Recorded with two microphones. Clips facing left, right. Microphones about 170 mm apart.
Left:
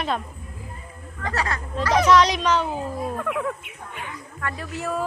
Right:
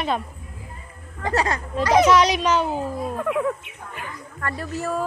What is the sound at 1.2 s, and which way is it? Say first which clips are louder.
Speech: right 4 dB; 20° right (ahead or behind).